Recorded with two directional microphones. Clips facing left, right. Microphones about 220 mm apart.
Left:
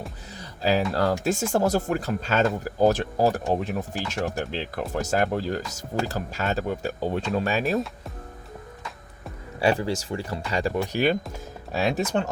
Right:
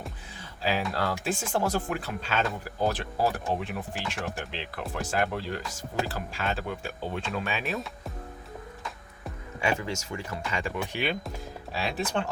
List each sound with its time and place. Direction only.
0.3 s music: 40° left (ahead or behind)
0.9 s speech: 40° left (ahead or behind)
9.6 s speech: 35° left (ahead or behind)